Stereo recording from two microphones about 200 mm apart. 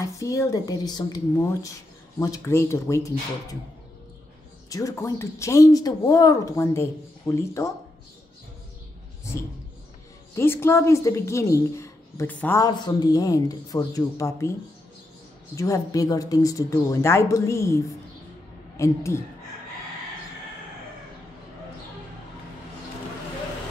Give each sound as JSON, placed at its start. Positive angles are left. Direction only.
{"t": 0.0, "sound": "a woman's voice", "side_deg": 15}
{"t": 4.6, "sound": "a woman's voice", "side_deg": 15}
{"t": 10.3, "sound": "a woman's voice", "side_deg": 10}
{"t": 15.5, "sound": "a woman's voice", "side_deg": 15}
{"t": 18.8, "sound": "a woman's voice", "side_deg": 15}